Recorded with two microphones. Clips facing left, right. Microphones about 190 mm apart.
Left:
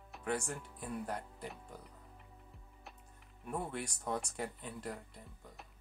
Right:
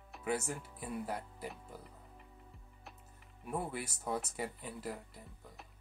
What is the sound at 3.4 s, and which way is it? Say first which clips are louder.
Speech: right 1 dB; 5° right (ahead or behind).